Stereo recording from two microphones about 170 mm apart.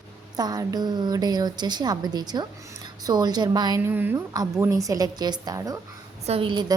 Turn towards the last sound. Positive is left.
turn(degrees=-25)  # may be behind; listen again after turning